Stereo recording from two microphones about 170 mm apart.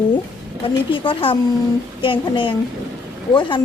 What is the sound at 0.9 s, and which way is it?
Speech, 30° left (ahead or behind).